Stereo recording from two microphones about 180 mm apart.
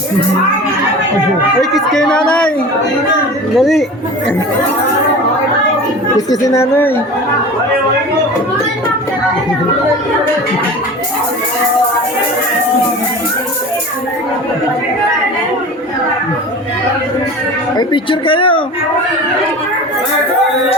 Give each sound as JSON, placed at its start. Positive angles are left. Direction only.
{"t": 1.7, "sound": "speech", "side_deg": 0}
{"t": 3.6, "sound": "speech", "side_deg": 0}
{"t": 6.1, "sound": "speech", "side_deg": 20}
{"t": 17.7, "sound": "speech", "side_deg": 30}